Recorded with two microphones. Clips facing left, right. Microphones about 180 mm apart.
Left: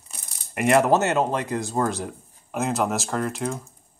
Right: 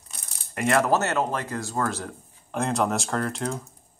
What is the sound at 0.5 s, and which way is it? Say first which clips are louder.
Speech: left 3 dB; 20° left (ahead or behind).